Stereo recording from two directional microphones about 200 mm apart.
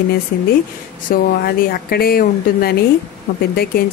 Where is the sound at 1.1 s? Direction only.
50° left (ahead or behind).